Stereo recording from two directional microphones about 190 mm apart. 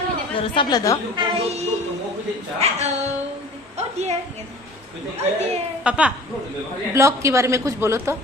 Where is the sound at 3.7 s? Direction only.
35° right (ahead or behind).